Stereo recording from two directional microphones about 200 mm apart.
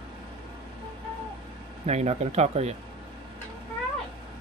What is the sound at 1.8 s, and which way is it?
Speech, 35° right (ahead or behind).